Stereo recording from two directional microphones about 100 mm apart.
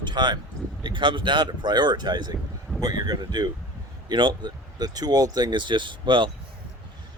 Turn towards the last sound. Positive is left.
turn(degrees=-55)  # may be behind; listen again after turning